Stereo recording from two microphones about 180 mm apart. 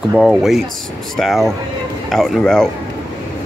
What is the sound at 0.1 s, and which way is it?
Speech, centre (ahead or behind).